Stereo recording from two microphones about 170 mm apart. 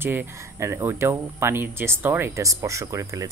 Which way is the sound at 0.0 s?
15° right (ahead or behind).